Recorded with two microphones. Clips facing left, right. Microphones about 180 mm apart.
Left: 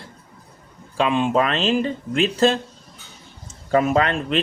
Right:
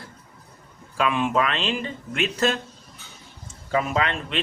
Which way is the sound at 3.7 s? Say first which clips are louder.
Left 6 dB; 45° left (ahead or behind).